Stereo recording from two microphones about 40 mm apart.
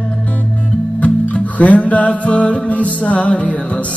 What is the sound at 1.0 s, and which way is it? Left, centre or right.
Music, left.